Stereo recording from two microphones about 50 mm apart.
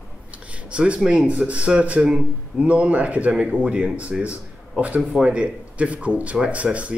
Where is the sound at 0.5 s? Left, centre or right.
Right.